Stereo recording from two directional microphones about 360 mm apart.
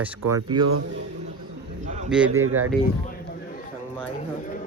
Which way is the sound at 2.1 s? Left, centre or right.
Centre.